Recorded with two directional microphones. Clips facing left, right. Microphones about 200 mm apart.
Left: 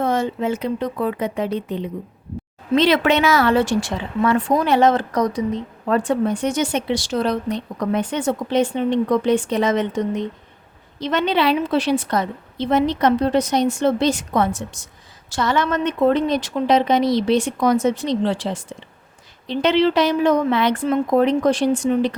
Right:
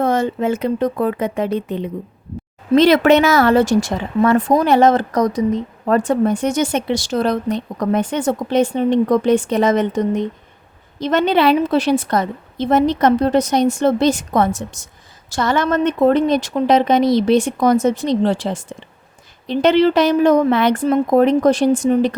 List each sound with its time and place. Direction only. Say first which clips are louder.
0.0 s speech: right 3 dB; 45° right (ahead or behind)